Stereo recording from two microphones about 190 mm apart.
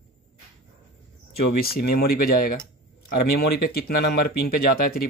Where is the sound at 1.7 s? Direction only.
55° left (ahead or behind).